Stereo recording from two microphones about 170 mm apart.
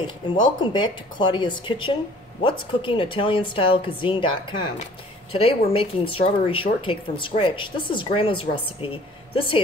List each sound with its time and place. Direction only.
0.0 s a woman's voice: 25° left (ahead or behind)